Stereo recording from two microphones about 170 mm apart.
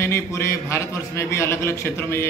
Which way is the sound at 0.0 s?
15° left (ahead or behind).